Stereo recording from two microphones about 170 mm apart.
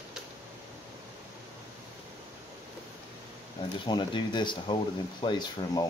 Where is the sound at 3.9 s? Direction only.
25° left (ahead or behind).